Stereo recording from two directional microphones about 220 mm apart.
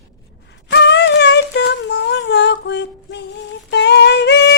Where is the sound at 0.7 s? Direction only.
50° left (ahead or behind).